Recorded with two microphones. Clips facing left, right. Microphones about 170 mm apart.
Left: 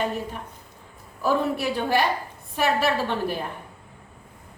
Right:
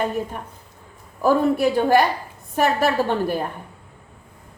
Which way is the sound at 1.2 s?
50° right (ahead or behind).